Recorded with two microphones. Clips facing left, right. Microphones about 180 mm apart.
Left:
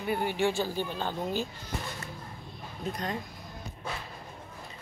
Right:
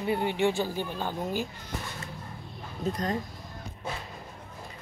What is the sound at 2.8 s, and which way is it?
Speech, 40° right (ahead or behind).